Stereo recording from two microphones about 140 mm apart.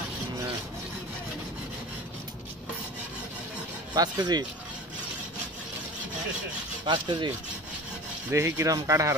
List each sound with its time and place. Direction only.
3.9 s speech: 30° right (ahead or behind)
6.9 s speech: 30° right (ahead or behind)
8.3 s speech: 20° right (ahead or behind)